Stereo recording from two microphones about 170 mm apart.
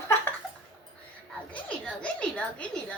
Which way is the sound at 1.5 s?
5° left (ahead or behind).